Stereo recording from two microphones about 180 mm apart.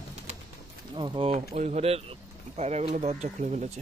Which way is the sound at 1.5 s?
40° right (ahead or behind).